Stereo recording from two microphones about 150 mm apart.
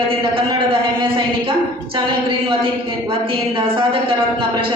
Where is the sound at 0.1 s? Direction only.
35° right (ahead or behind).